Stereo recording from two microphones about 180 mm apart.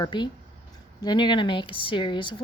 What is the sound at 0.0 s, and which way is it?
Speech, 25° left (ahead or behind).